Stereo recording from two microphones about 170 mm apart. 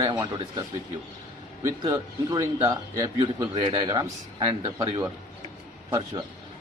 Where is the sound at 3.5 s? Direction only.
30° right (ahead or behind).